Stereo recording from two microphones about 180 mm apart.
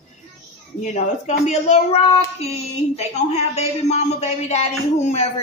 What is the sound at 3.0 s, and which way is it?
A man's voice, 35° left (ahead or behind).